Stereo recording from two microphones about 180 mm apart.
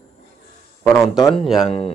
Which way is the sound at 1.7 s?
35° left (ahead or behind).